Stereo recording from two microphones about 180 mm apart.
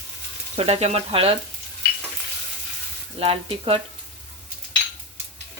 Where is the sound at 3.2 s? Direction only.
30° right (ahead or behind).